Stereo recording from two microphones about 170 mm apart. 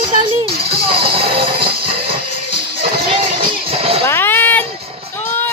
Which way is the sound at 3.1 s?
30° right (ahead or behind).